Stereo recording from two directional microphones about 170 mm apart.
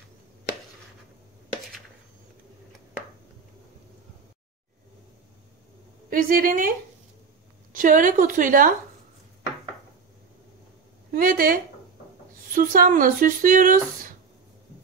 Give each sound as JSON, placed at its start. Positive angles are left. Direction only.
{"t": 6.0, "sound": "a woman's voice", "side_deg": -55}
{"t": 7.7, "sound": "speech", "side_deg": -50}
{"t": 11.1, "sound": "a woman's voice", "side_deg": -55}